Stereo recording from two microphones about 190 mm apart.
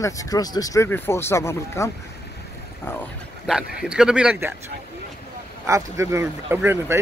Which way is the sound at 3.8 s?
5° right (ahead or behind).